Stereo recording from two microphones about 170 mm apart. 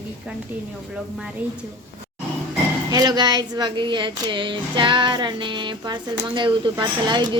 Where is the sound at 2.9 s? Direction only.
25° right (ahead or behind).